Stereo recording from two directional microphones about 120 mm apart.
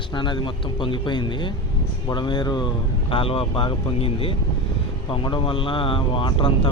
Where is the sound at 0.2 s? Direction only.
40° left (ahead or behind).